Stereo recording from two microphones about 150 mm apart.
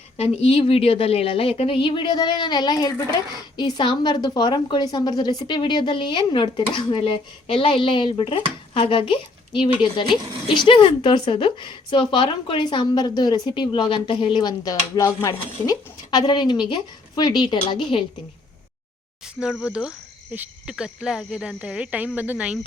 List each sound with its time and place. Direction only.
0.2 s a woman's voice: 40° left (ahead or behind)
19.4 s speech: centre (ahead or behind)